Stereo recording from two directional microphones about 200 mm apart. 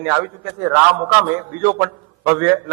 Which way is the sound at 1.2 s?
10° right (ahead or behind).